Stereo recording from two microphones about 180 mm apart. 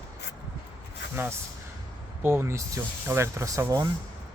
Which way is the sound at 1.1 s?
10° right (ahead or behind).